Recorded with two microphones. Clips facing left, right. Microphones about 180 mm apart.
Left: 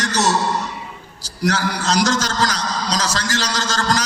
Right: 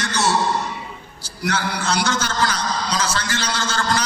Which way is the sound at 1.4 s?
40° left (ahead or behind).